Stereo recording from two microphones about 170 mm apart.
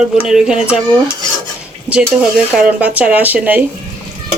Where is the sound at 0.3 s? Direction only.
5° right (ahead or behind).